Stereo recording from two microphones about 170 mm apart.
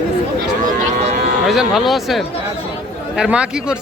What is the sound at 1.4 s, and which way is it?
A man's voice, centre (ahead or behind).